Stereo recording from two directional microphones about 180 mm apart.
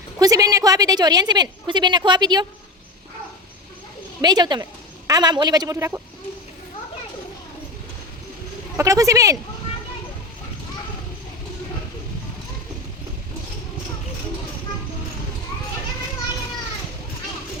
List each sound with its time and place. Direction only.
0.2 s a woman's voice: 20° right (ahead or behind)
4.2 s a woman's voice: 25° right (ahead or behind)
8.7 s a woman's voice: 20° right (ahead or behind)